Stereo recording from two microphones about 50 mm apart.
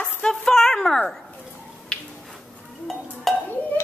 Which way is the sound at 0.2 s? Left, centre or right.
Centre.